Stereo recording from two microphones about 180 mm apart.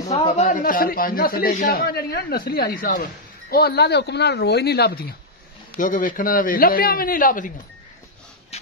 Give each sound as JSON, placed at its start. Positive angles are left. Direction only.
{"t": 0.1, "sound": "a man's voice", "side_deg": 40}
{"t": 5.8, "sound": "a man's voice", "side_deg": 45}